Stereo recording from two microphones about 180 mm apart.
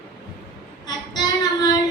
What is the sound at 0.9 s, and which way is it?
Child singing, 20° left (ahead or behind).